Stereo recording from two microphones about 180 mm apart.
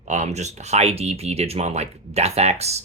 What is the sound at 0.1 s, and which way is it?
Speech, 40° right (ahead or behind).